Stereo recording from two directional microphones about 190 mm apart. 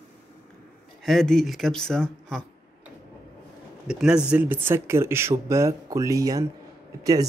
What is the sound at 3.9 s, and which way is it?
Speech, 5° right (ahead or behind).